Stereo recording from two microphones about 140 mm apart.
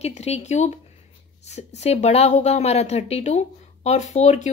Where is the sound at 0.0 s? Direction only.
50° left (ahead or behind).